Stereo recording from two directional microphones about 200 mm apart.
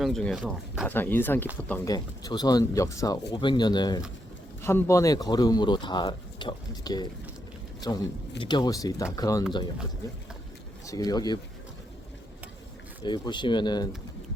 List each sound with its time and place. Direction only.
0.0 s speech: centre (ahead or behind)
0.9 s speech: 10° left (ahead or behind)
1.9 s speech: 20° left (ahead or behind)
10.8 s speech: 20° left (ahead or behind)
13.0 s speech: 20° left (ahead or behind)